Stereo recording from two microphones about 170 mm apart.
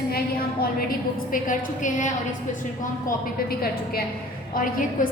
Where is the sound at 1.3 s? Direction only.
50° left (ahead or behind).